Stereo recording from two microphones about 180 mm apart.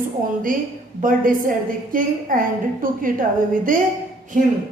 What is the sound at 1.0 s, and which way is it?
A woman's voice, 50° right (ahead or behind).